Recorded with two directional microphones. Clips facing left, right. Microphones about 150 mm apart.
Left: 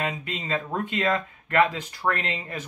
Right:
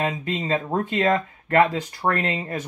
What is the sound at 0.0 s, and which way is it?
Speech, 35° right (ahead or behind).